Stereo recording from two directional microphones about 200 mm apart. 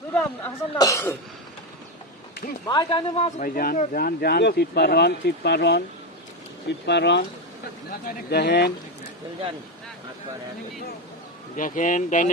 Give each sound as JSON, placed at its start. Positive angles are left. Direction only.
{"t": 0.1, "sound": "speech", "side_deg": 10}
{"t": 2.6, "sound": "speech", "side_deg": 25}
{"t": 8.3, "sound": "speech", "side_deg": 55}
{"t": 11.5, "sound": "speech", "side_deg": 40}